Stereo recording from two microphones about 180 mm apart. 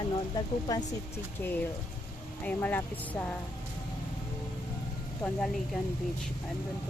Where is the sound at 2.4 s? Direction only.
10° left (ahead or behind).